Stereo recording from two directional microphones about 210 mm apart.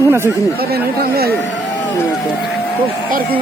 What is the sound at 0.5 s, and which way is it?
Speech, 45° right (ahead or behind).